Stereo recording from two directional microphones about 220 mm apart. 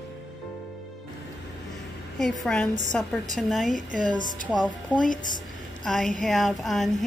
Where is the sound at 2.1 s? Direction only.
5° left (ahead or behind).